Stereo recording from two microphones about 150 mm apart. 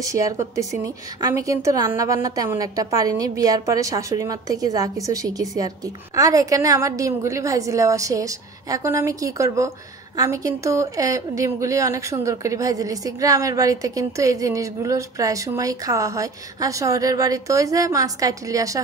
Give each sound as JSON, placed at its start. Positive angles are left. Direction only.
{"t": 0.0, "sound": "a woman's voice", "side_deg": -20}